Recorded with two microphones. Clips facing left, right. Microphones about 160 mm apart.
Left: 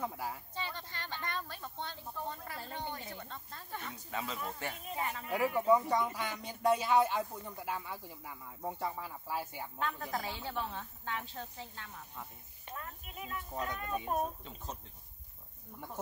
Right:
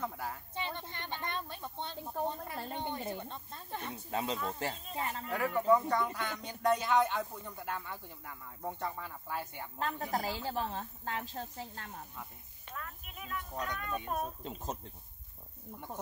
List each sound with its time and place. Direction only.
0.0 s speech: 5° left (ahead or behind)
0.6 s a woman's voice: 20° right (ahead or behind)
5.2 s speech: 15° left (ahead or behind)
9.8 s speech: 35° right (ahead or behind)
12.6 s a sound: 20° left (ahead or behind)
13.5 s speech: 5° left (ahead or behind)
14.4 s speech: 45° right (ahead or behind)